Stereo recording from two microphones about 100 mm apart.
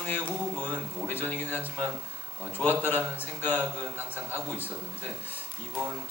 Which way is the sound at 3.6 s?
20° right (ahead or behind).